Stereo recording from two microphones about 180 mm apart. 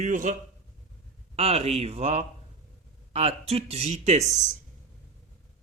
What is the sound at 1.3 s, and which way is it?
Speech, 35° right (ahead or behind).